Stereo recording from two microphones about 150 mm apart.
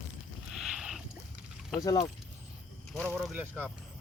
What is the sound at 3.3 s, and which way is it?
Speech, 10° right (ahead or behind).